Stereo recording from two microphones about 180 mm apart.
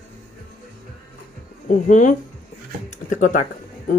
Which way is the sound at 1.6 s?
45° left (ahead or behind).